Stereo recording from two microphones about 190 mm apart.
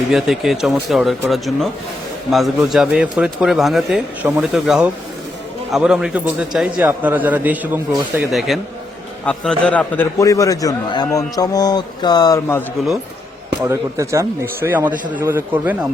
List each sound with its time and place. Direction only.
0.1 s a man's voice: centre (ahead or behind); by 12.6 s 15° left (ahead or behind)
13.6 s speech: 15° right (ahead or behind)